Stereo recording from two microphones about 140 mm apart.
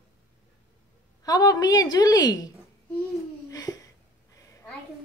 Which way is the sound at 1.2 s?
25° left (ahead or behind).